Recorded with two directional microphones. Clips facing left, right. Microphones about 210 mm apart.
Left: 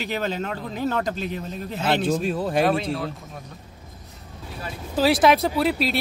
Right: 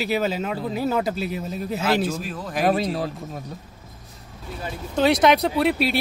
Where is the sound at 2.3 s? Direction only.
30° left (ahead or behind).